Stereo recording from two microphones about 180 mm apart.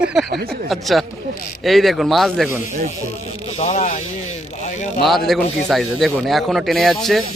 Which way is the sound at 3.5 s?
35° left (ahead or behind).